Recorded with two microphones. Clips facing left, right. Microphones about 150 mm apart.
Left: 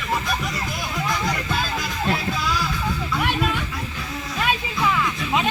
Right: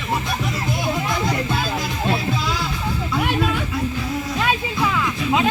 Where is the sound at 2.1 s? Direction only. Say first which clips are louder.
Right 2 dB; 25° right (ahead or behind).